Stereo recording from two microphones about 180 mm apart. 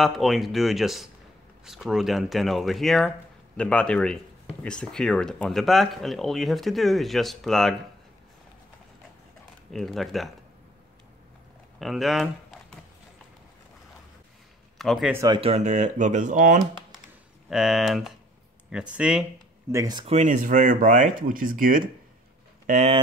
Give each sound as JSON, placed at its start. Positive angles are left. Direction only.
{"t": 0.0, "sound": "speech", "side_deg": 0}
{"t": 9.7, "sound": "speech", "side_deg": 0}
{"t": 11.8, "sound": "speech", "side_deg": 0}
{"t": 14.8, "sound": "speech", "side_deg": 0}
{"t": 15.1, "sound": "speech", "side_deg": -20}
{"t": 15.4, "sound": "speech", "side_deg": -40}
{"t": 17.5, "sound": "speech", "side_deg": 0}
{"t": 19.7, "sound": "speech", "side_deg": -20}
{"t": 20.1, "sound": "speech", "side_deg": -40}